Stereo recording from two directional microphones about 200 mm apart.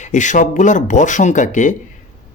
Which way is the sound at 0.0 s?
40° left (ahead or behind).